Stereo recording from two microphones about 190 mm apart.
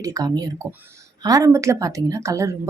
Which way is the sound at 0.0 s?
20° right (ahead or behind).